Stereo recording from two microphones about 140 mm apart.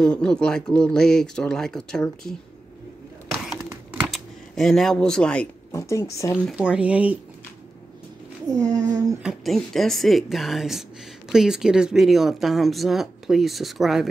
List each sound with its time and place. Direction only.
0.0 s speech: 5° left (ahead or behind)
4.1 s speech: centre (ahead or behind)
5.7 s speech: 20° left (ahead or behind)
6.5 s speech: 10° right (ahead or behind)
8.5 s speech: 25° right (ahead or behind)
9.2 s speech: centre (ahead or behind)